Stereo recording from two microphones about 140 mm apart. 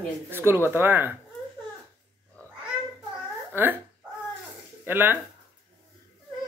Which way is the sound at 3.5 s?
15° right (ahead or behind).